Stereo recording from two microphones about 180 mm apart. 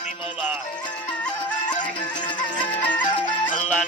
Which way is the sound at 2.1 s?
25° left (ahead or behind).